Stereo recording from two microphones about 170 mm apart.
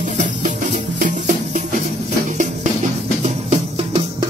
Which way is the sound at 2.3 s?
45° right (ahead or behind).